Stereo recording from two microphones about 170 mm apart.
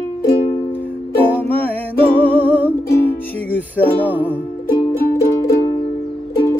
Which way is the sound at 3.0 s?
10° left (ahead or behind).